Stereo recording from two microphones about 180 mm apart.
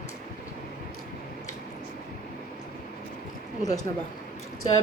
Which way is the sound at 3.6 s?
20° left (ahead or behind).